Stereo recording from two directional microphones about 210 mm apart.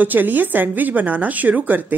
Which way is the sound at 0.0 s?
10° right (ahead or behind).